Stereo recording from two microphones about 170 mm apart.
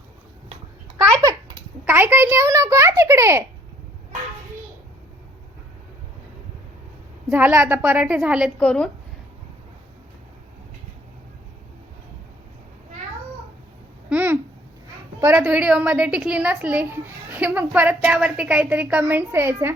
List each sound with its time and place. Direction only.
0.9 s babbling: 20° right (ahead or behind)
1.8 s a woman's voice: 10° right (ahead or behind)
7.3 s a woman's voice: 10° right (ahead or behind)
14.1 s babbling: 10° right (ahead or behind)
15.2 s a woman's voice: 10° right (ahead or behind)